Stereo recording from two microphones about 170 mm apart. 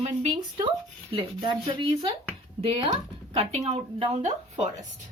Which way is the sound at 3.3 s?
40° right (ahead or behind).